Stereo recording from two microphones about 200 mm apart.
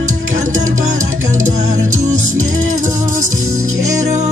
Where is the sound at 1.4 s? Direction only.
40° right (ahead or behind).